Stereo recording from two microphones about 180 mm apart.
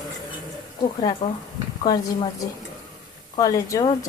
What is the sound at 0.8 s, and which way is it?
A woman's voice, 30° left (ahead or behind).